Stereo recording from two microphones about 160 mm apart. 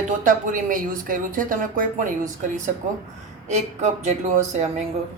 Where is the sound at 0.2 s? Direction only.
55° right (ahead or behind).